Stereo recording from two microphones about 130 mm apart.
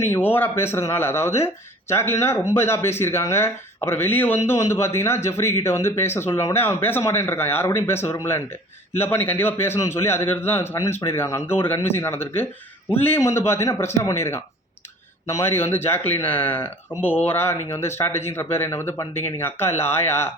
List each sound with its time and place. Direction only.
0.0 s a man's voice: 15° left (ahead or behind)